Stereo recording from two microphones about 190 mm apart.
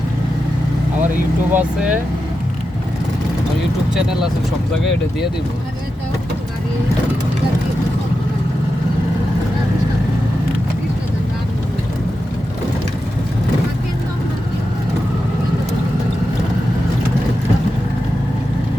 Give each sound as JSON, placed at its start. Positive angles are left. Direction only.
{"t": 1.5, "sound": "speech", "side_deg": -5}